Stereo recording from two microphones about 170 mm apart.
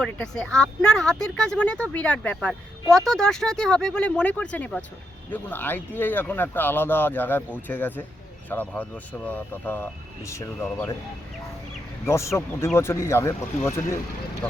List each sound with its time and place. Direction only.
0.0 s speech: 5° left (ahead or behind)
12.0 s speech: 15° left (ahead or behind)